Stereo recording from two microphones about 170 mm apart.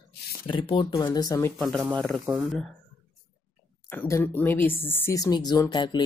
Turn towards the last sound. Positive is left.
turn(degrees=25)  # may be behind; listen again after turning